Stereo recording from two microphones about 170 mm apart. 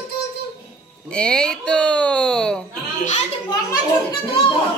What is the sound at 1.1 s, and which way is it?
Speech, 5° left (ahead or behind).